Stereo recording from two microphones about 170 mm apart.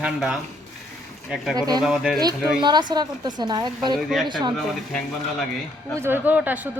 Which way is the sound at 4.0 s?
Centre (ahead or behind).